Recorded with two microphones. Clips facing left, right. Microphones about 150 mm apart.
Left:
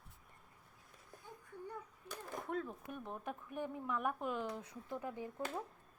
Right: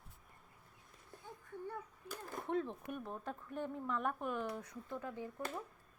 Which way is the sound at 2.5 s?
20° right (ahead or behind).